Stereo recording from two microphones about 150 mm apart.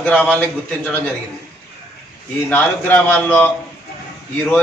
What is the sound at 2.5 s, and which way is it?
Speech, 10° left (ahead or behind).